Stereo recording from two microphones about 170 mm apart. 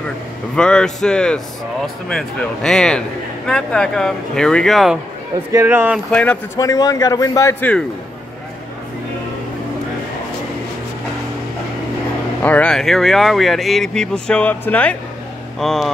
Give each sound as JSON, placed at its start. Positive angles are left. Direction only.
{"t": 0.6, "sound": "speech", "side_deg": 5}
{"t": 5.5, "sound": "speech", "side_deg": -15}
{"t": 6.1, "sound": "a man's voice", "side_deg": 10}
{"t": 6.6, "sound": "a man's voice", "side_deg": 20}
{"t": 12.4, "sound": "speech", "side_deg": 10}